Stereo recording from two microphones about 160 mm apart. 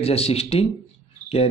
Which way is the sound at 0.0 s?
40° left (ahead or behind).